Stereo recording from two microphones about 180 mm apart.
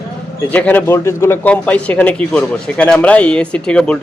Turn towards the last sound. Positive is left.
turn(degrees=5)  # may be behind; listen again after turning